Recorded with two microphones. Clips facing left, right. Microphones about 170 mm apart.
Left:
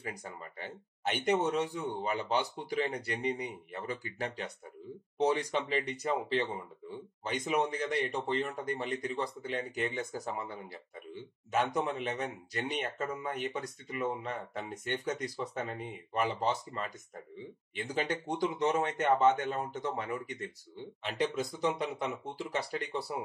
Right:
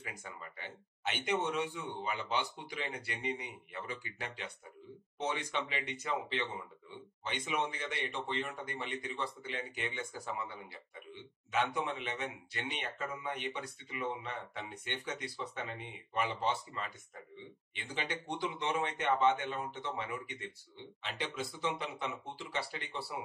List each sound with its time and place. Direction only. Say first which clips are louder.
0.0 s speech: left 5 dB; 35° left (ahead or behind)